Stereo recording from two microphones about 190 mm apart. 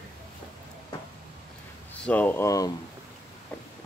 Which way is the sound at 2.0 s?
10° left (ahead or behind).